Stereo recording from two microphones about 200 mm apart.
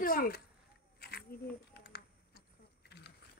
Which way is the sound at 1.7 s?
55° left (ahead or behind).